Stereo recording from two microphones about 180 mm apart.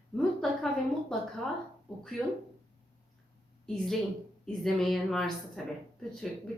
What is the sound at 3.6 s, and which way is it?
A woman's voice, centre (ahead or behind).